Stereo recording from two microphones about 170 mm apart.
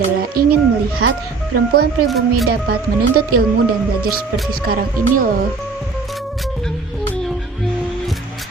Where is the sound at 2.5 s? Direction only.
70° right (ahead or behind).